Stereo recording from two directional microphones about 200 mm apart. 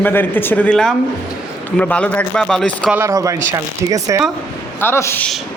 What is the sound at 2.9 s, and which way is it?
Speech, 15° right (ahead or behind).